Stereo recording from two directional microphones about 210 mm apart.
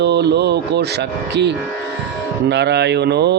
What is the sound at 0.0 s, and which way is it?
Mantra, 55° right (ahead or behind).